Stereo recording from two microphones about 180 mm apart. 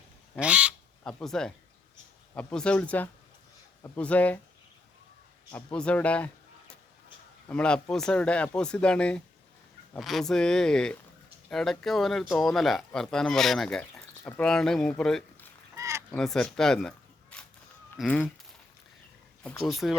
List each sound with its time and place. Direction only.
0.3 s speech: 5° right (ahead or behind)
5.5 s speech: 5° left (ahead or behind)
15.7 s fowl: 15° right (ahead or behind)
16.1 s speech: 5° left (ahead or behind)
17.9 s speech: centre (ahead or behind)
19.4 s speech: 5° left (ahead or behind)